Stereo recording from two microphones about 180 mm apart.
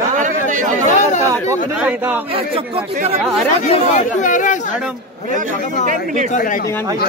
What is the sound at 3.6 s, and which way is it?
Speech, 40° left (ahead or behind).